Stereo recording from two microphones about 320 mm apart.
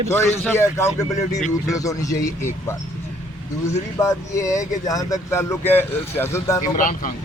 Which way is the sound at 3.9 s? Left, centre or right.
Centre.